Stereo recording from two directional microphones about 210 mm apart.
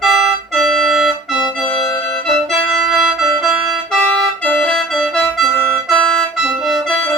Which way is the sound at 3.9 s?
5° left (ahead or behind).